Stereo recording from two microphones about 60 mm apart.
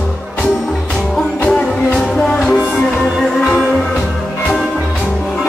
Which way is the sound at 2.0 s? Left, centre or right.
Centre.